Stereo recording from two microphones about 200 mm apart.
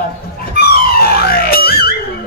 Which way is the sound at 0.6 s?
50° left (ahead or behind).